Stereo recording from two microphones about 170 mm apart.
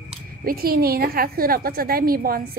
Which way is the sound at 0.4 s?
60° right (ahead or behind).